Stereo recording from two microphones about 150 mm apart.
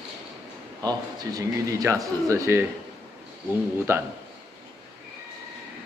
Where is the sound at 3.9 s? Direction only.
15° right (ahead or behind).